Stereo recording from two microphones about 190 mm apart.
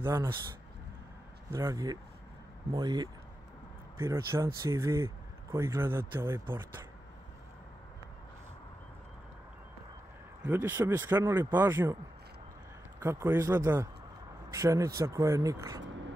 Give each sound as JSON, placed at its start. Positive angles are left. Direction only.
{"t": 0.0, "sound": "speech", "side_deg": -15}
{"t": 1.5, "sound": "speech", "side_deg": -15}
{"t": 10.4, "sound": "speech", "side_deg": -10}
{"t": 13.0, "sound": "speech", "side_deg": -15}